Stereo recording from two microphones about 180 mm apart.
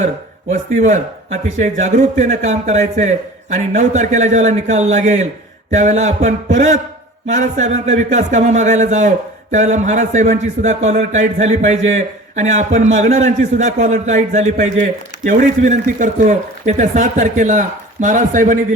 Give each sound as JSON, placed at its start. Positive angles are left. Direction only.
{"t": 0.0, "sound": "a man's voice", "side_deg": -40}